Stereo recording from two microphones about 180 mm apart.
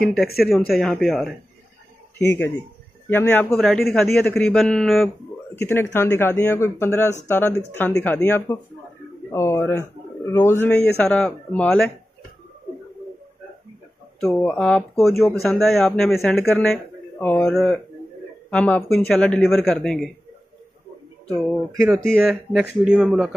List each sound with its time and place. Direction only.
0.0 s a man's voice: centre (ahead or behind)
2.1 s a man's voice: 15° left (ahead or behind)
14.2 s a man's voice: 5° left (ahead or behind)
21.7 s speech: 15° right (ahead or behind)
22.3 s a man's voice: centre (ahead or behind)